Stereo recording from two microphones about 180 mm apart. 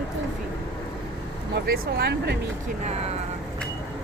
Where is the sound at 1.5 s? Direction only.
65° right (ahead or behind).